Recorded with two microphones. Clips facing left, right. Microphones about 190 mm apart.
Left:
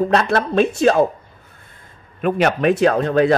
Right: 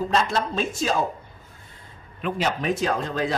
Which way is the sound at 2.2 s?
65° left (ahead or behind).